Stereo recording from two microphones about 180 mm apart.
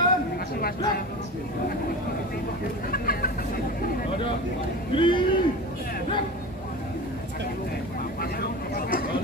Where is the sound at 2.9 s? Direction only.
55° left (ahead or behind).